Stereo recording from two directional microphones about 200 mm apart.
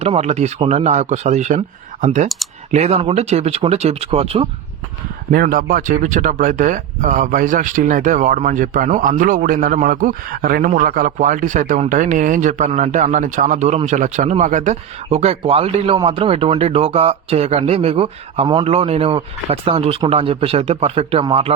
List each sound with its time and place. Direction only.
0.0 s speech: 30° right (ahead or behind)
5.3 s speech: 45° right (ahead or behind); by 21.5 s 25° right (ahead or behind)